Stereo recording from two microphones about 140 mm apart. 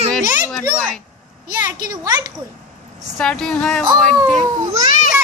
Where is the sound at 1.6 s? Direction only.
25° right (ahead or behind).